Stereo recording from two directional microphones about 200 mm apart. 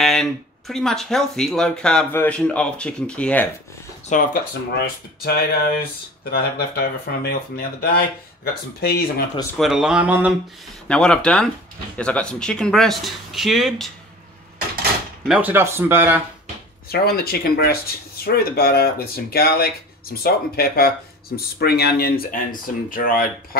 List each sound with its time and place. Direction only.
0.0 s speech: centre (ahead or behind)
4.1 s speech: 45° left (ahead or behind)
9.6 s speech: centre (ahead or behind)
10.9 s speech: 5° left (ahead or behind)
15.2 s speech: 5° right (ahead or behind)
16.9 s speech: 50° left (ahead or behind)